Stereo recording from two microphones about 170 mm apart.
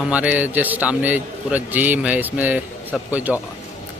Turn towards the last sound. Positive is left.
turn(degrees=-10)  # may be behind; listen again after turning